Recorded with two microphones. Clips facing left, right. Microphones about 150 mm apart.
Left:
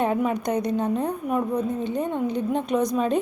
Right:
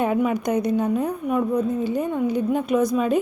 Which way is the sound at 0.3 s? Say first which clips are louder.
Right 3 dB; 10° right (ahead or behind).